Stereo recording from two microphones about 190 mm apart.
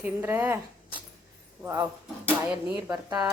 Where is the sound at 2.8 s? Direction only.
20° right (ahead or behind).